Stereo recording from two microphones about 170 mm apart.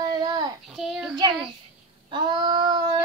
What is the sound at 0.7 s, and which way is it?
Child singing, centre (ahead or behind).